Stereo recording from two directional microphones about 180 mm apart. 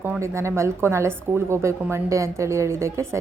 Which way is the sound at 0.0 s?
15° right (ahead or behind).